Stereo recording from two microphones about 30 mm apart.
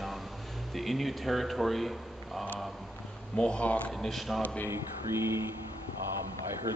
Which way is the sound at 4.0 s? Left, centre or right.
Centre.